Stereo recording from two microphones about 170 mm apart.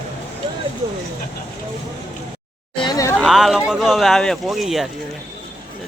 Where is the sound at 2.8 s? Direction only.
25° left (ahead or behind).